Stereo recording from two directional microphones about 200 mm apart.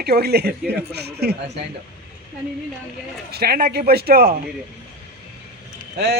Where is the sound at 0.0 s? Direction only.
50° right (ahead or behind).